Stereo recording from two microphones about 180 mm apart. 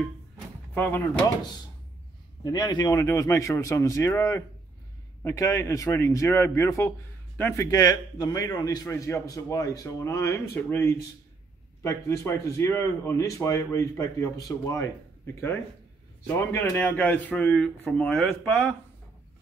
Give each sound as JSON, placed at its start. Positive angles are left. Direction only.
{"t": 0.7, "sound": "speech", "side_deg": 10}
{"t": 2.4, "sound": "speech", "side_deg": 20}
{"t": 16.3, "sound": "speech", "side_deg": 15}